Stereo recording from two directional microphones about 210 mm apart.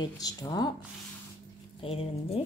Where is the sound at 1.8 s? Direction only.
25° left (ahead or behind).